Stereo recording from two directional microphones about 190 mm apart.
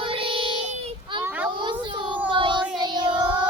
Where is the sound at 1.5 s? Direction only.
25° right (ahead or behind).